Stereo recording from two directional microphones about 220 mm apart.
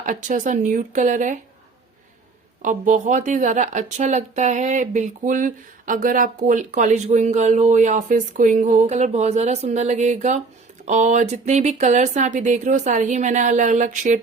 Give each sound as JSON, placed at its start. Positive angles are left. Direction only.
{"t": 0.0, "sound": "speech", "side_deg": -35}
{"t": 2.6, "sound": "speech", "side_deg": -35}